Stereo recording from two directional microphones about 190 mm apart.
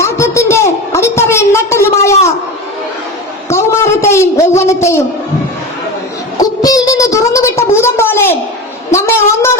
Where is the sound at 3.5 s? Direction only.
15° left (ahead or behind).